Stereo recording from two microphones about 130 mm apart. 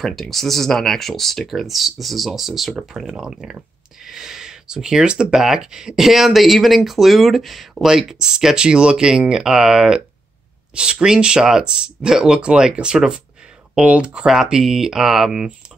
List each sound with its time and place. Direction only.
0.0 s speech: centre (ahead or behind)